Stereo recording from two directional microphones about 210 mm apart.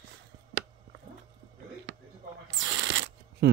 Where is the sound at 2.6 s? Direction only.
60° right (ahead or behind).